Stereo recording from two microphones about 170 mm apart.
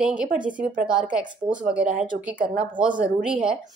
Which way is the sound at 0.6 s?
50° right (ahead or behind).